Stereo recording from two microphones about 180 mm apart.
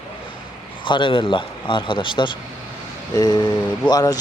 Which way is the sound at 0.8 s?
25° left (ahead or behind).